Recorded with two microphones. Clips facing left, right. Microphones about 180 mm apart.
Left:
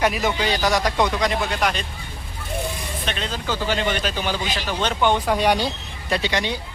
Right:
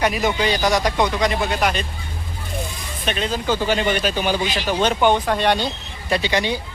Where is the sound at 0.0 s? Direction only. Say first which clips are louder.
Right 2 dB; centre (ahead or behind).